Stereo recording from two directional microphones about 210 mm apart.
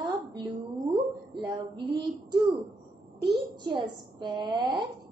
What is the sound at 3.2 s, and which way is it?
A child's voice, 20° right (ahead or behind).